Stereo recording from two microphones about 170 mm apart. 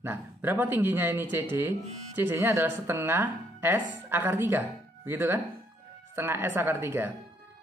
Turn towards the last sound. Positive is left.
turn(degrees=-15)  # may be behind; listen again after turning